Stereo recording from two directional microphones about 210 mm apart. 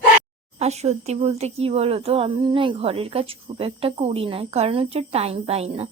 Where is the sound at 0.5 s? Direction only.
30° right (ahead or behind).